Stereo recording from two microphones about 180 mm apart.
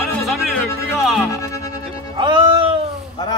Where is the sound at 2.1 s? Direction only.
25° right (ahead or behind).